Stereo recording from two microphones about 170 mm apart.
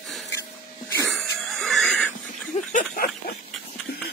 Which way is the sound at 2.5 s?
55° left (ahead or behind).